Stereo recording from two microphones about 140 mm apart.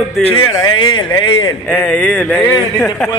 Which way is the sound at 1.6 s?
10° left (ahead or behind).